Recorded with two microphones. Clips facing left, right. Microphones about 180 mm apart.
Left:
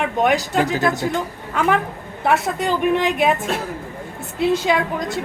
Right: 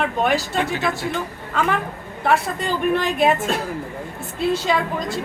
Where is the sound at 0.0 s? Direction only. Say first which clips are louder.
Left 2 dB; 15° left (ahead or behind).